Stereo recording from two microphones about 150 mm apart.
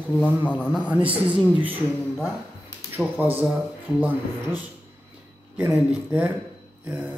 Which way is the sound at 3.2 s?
10° right (ahead or behind).